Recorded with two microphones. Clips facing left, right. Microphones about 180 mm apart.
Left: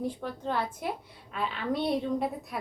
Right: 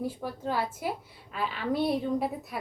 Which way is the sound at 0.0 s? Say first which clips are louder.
Even; 5° right (ahead or behind).